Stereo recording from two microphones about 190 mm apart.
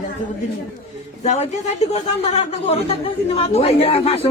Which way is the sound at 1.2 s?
35° left (ahead or behind).